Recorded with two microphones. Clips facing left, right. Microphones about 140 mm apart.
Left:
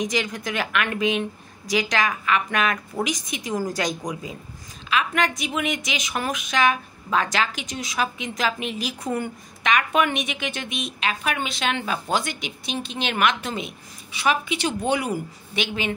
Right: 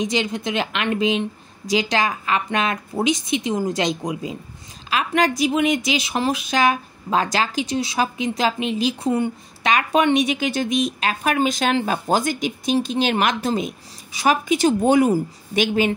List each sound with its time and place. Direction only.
0.0 s a woman's voice: 25° right (ahead or behind)